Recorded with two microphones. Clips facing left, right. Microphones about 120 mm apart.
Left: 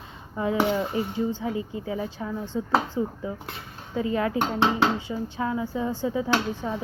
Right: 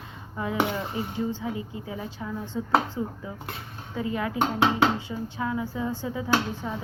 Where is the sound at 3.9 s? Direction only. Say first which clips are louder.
Left 2 dB; 30° left (ahead or behind).